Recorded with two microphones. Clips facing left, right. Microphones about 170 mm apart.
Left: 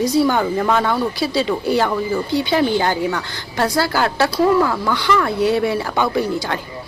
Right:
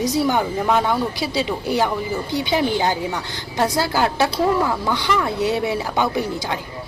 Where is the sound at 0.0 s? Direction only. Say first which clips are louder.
Left 3 dB; 20° right (ahead or behind).